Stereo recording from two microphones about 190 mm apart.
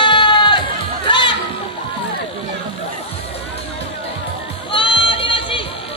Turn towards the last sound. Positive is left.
turn(degrees=25)  # may be behind; listen again after turning